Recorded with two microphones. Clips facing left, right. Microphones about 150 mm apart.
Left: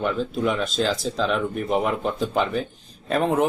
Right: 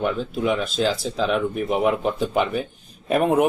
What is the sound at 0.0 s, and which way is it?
Speech, 5° right (ahead or behind).